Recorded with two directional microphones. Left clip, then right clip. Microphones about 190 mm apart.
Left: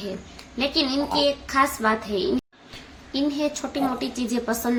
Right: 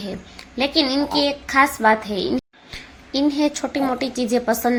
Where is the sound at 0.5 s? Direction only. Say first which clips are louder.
Right 4 dB; 30° right (ahead or behind).